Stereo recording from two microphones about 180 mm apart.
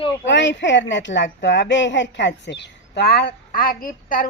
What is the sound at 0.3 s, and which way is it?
A woman's voice, 85° left.